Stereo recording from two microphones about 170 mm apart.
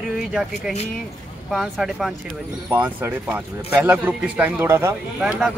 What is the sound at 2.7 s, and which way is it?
Speech, 10° right (ahead or behind).